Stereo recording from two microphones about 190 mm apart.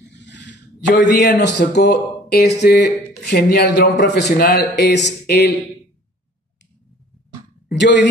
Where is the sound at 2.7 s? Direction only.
55° left (ahead or behind).